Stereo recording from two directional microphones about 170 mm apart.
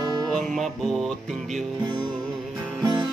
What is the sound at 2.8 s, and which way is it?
Music, 25° right (ahead or behind).